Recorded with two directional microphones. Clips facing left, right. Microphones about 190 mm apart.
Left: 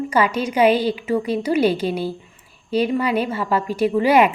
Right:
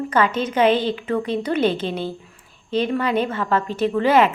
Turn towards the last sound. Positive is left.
turn(degrees=15)  # may be behind; listen again after turning